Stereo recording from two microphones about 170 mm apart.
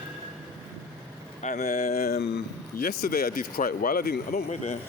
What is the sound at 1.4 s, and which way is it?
Speech, 45° left (ahead or behind).